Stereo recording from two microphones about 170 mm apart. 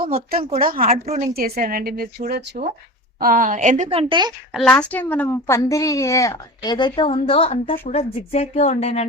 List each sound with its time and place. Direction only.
0.0 s a woman's voice: 60° right (ahead or behind)
3.8 s a woman's voice: 30° right (ahead or behind)
4.7 s speech: 10° left (ahead or behind); by 9.0 s 40° left (ahead or behind)